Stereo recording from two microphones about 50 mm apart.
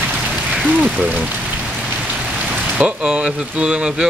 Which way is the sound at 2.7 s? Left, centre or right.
Right.